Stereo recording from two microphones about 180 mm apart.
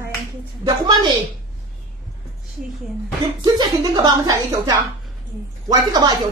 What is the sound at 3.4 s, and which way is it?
Speech, 25° right (ahead or behind).